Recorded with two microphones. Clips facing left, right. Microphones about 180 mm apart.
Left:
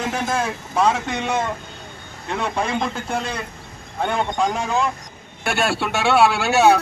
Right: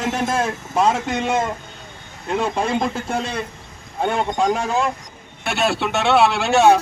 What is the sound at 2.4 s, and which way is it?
Speech, 25° right (ahead or behind).